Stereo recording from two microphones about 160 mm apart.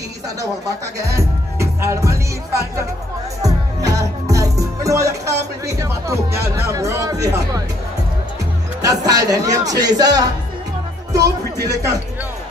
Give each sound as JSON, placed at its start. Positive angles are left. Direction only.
{"t": 0.4, "sound": "speech", "side_deg": -20}
{"t": 3.4, "sound": "music", "side_deg": -20}
{"t": 5.3, "sound": "music", "side_deg": -90}
{"t": 5.8, "sound": "speech", "side_deg": -20}
{"t": 8.8, "sound": "speech", "side_deg": -20}
{"t": 11.6, "sound": "speech", "side_deg": -20}